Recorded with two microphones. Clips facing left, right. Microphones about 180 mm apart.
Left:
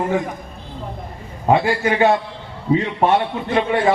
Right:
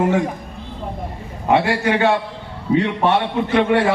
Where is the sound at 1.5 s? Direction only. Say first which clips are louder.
Right 3 dB; 75° right (ahead or behind).